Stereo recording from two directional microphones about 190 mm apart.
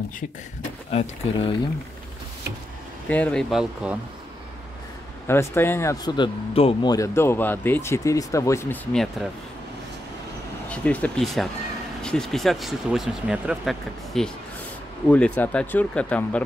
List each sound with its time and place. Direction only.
0.9 s speech: 30° left (ahead or behind)
3.1 s speech: 5° left (ahead or behind)
5.2 s speech: 15° left (ahead or behind)
8.9 s speech: centre (ahead or behind)
10.7 s speech: 5° left (ahead or behind)